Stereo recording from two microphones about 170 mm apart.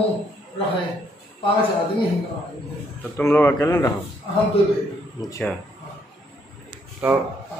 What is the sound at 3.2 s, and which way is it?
Speech, 15° left (ahead or behind).